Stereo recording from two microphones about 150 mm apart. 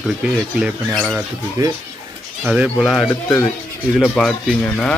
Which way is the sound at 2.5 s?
5° right (ahead or behind).